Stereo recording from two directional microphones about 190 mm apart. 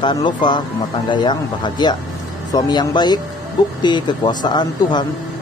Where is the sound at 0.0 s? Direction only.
25° left (ahead or behind).